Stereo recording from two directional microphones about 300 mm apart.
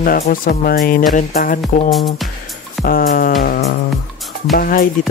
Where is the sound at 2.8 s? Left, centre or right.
Left.